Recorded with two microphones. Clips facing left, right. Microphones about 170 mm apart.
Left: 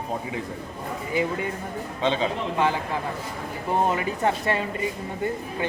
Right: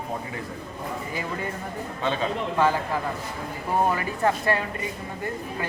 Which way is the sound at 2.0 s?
20° left (ahead or behind).